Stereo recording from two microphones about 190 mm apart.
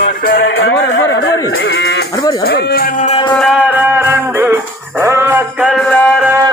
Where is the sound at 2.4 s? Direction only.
55° left (ahead or behind).